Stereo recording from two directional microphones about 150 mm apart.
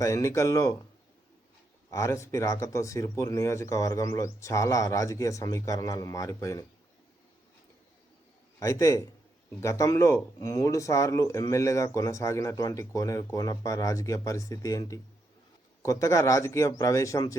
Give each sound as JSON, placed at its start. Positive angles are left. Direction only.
{"t": 0.0, "sound": "speech", "side_deg": 20}
{"t": 1.9, "sound": "speech", "side_deg": 20}
{"t": 8.5, "sound": "speech", "side_deg": 20}